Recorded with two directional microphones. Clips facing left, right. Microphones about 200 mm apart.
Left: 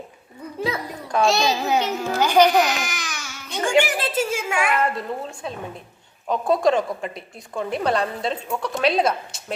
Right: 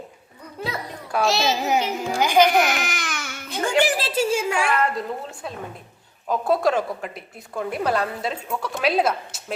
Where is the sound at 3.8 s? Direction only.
35° right (ahead or behind).